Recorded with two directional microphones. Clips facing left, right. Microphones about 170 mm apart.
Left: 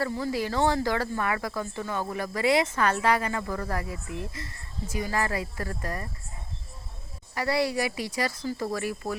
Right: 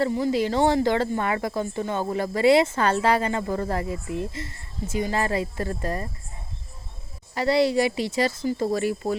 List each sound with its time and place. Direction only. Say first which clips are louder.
0.0 s speech: right 6 dB; 20° right (ahead or behind)
7.3 s speech: right 6 dB; 25° right (ahead or behind)